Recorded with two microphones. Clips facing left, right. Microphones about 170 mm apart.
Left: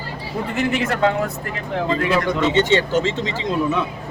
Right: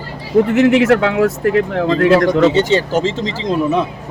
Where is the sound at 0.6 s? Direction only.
85° right.